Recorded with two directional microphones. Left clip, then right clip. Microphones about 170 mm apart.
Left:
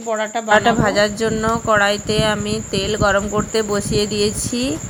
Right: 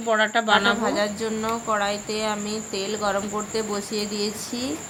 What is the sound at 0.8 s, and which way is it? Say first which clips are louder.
Speech: left 8 dB; 40° left (ahead or behind).